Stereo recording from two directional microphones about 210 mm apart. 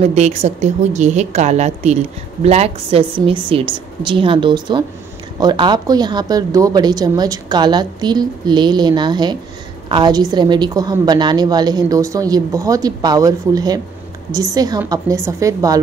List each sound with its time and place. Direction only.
0.0 s a woman's voice: 30° right (ahead or behind); by 15.8 s 15° right (ahead or behind)